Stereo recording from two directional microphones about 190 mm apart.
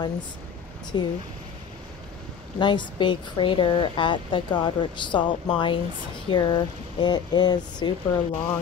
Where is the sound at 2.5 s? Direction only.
25° left (ahead or behind).